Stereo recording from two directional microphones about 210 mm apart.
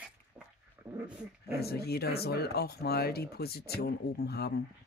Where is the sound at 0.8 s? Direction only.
10° right (ahead or behind).